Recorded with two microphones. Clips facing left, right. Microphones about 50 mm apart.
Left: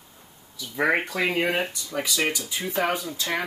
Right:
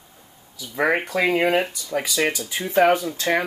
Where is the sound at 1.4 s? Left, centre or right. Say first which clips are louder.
Right 4 dB; right.